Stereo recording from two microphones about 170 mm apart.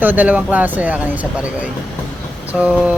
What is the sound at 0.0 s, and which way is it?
Speech, 10° right (ahead or behind).